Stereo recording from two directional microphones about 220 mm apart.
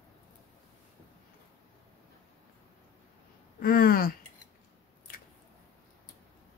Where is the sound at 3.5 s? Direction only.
40° left (ahead or behind).